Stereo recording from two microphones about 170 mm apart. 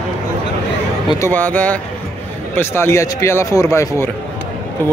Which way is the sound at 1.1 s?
15° left (ahead or behind).